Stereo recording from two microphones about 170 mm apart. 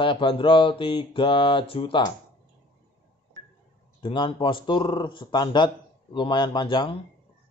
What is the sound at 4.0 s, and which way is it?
Speech, 30° left (ahead or behind).